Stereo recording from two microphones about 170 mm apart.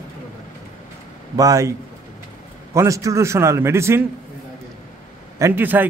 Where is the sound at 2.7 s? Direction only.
20° right (ahead or behind).